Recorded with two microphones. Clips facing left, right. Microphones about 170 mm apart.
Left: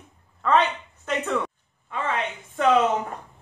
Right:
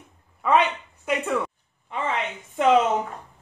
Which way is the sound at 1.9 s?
20° right (ahead or behind).